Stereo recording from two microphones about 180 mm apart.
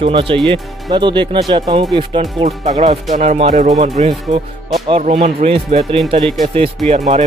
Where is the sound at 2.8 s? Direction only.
40° right (ahead or behind).